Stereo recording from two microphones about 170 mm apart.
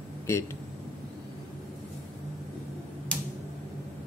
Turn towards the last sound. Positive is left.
turn(degrees=5)  # may be behind; listen again after turning